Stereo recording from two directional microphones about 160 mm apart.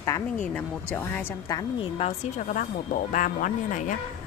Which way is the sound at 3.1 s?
55° left (ahead or behind).